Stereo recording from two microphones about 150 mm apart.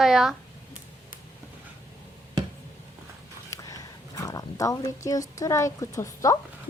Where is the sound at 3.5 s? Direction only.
20° left (ahead or behind).